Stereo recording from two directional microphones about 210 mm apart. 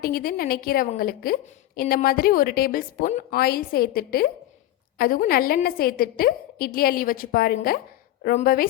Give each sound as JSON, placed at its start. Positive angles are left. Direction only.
{"t": 0.0, "sound": "a woman's voice", "side_deg": 45}